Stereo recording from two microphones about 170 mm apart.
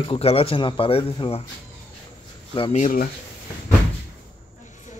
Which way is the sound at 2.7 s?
50° left (ahead or behind).